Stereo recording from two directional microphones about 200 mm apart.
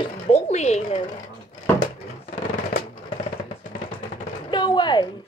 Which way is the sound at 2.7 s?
45° left (ahead or behind).